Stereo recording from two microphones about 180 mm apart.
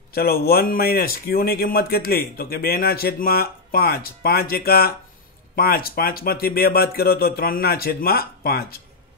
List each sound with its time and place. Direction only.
0.1 s speech: 60° left (ahead or behind)